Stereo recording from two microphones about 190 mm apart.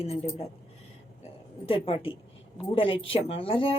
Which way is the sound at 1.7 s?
30° left (ahead or behind).